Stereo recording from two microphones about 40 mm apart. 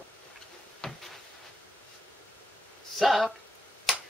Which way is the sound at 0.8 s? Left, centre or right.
Centre.